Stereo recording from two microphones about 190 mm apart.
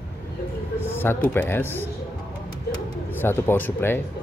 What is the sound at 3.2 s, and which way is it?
Speech, 10° left (ahead or behind).